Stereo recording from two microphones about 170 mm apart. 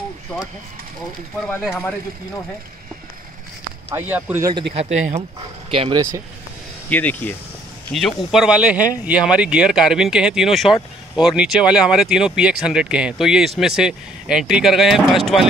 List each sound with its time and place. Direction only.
1.4 s speech: centre (ahead or behind)
3.9 s speech: 15° right (ahead or behind)
4.7 s speech: 40° right (ahead or behind)
5.7 s speech: 30° right (ahead or behind)
6.9 s speech: 10° left (ahead or behind)
8.3 s speech: 5° right (ahead or behind)